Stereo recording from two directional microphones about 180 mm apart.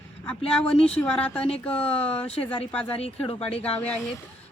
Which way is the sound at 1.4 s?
35° left (ahead or behind).